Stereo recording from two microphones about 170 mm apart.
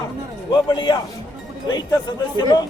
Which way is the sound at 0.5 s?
25° left (ahead or behind).